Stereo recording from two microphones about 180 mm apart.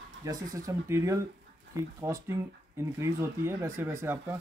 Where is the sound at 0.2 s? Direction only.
20° right (ahead or behind).